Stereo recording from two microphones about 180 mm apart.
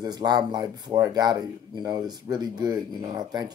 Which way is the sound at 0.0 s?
20° right (ahead or behind).